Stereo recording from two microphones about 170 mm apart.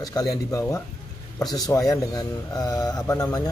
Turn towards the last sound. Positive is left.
turn(degrees=20)  # may be behind; listen again after turning